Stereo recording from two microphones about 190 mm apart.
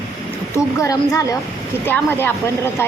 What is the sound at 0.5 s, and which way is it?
Speech, 15° left (ahead or behind).